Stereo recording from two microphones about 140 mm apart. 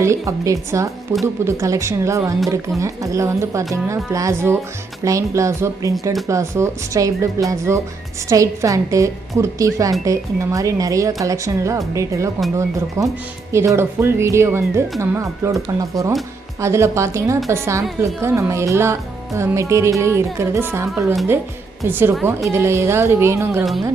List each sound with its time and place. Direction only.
0.0 s speech: 20° right (ahead or behind)